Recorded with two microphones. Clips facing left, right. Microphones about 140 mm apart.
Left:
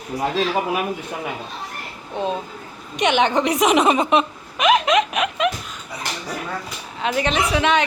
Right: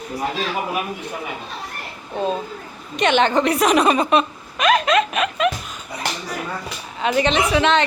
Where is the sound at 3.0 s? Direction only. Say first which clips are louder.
Right 1 dB; 15° left (ahead or behind).